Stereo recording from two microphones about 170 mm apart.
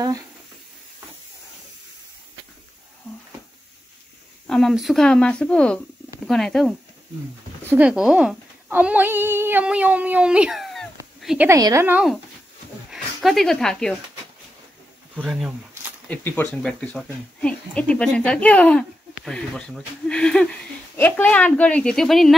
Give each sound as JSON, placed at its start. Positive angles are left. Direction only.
{"t": 4.5, "sound": "speech", "side_deg": 0}
{"t": 7.7, "sound": "speech", "side_deg": -5}
{"t": 11.1, "sound": "a sound", "side_deg": 0}
{"t": 11.4, "sound": "a woman's voice", "side_deg": -20}
{"t": 12.9, "sound": "speech", "side_deg": 0}
{"t": 15.1, "sound": "speech", "side_deg": -5}
{"t": 16.1, "sound": "speech", "side_deg": 10}